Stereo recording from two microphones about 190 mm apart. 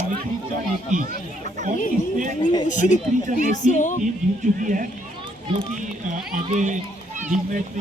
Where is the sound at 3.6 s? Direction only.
40° left (ahead or behind).